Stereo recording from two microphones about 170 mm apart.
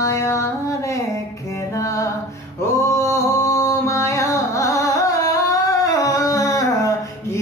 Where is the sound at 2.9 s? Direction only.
15° left (ahead or behind).